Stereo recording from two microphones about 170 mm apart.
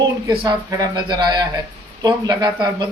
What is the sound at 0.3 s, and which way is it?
A man's voice, 20° right (ahead or behind).